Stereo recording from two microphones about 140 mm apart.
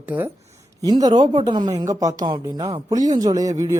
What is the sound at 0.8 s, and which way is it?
Speech, 30° right (ahead or behind).